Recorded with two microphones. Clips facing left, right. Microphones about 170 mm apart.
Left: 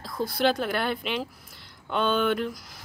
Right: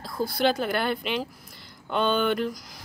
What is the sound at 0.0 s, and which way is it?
Speech, centre (ahead or behind).